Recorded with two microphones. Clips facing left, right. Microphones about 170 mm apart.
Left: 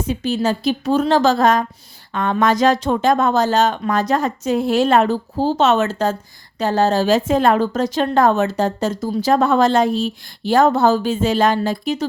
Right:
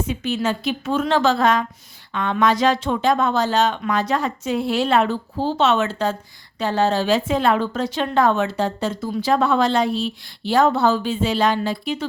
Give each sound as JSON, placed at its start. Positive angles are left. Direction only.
{"t": 0.1, "sound": "a woman's voice", "side_deg": 35}